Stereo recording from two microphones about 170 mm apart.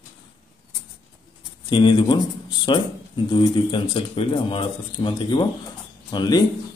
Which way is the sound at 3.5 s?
30° left (ahead or behind).